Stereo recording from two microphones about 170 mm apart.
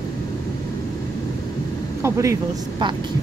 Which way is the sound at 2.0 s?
15° right (ahead or behind).